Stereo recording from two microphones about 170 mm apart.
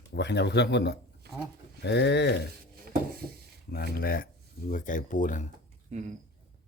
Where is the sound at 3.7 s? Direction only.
60° left (ahead or behind).